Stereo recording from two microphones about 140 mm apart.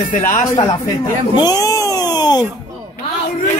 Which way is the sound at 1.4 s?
25° left (ahead or behind).